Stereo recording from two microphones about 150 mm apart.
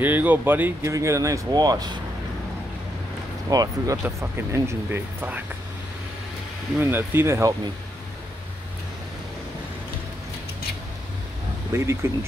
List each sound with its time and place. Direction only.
0.0 s speech: 10° right (ahead or behind)
3.4 s speech: 25° right (ahead or behind)
6.8 s speech: 15° right (ahead or behind)
11.7 s speech: 20° right (ahead or behind)